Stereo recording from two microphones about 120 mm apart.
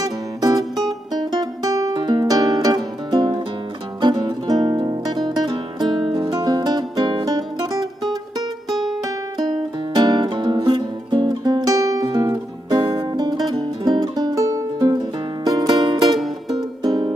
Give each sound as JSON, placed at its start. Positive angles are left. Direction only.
{"t": 0.0, "sound": "music", "side_deg": -30}
{"t": 9.9, "sound": "music", "side_deg": -35}